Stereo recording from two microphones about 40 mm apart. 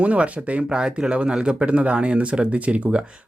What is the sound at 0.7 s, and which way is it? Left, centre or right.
Speech, right.